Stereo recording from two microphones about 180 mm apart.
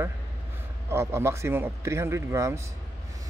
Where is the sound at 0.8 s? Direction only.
15° right (ahead or behind).